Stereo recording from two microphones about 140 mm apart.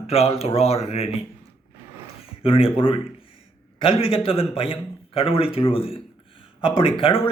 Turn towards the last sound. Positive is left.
turn(degrees=40)  # may be behind; listen again after turning